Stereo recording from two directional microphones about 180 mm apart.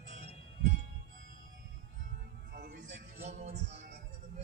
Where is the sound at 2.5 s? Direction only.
75° right (ahead or behind).